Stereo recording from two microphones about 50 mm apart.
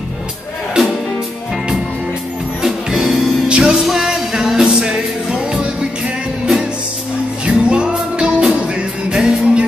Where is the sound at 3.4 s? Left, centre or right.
Centre.